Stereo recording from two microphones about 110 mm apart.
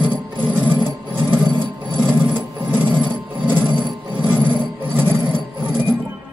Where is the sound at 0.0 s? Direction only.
45° right (ahead or behind).